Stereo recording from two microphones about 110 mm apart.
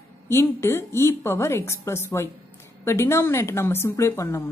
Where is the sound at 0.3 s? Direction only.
25° left (ahead or behind).